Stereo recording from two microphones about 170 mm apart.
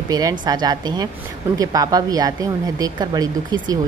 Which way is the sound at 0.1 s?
20° right (ahead or behind).